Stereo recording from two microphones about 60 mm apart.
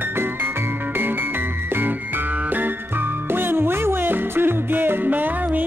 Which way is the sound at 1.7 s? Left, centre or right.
Right.